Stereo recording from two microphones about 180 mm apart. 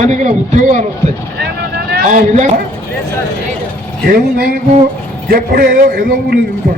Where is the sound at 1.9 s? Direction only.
50° right (ahead or behind).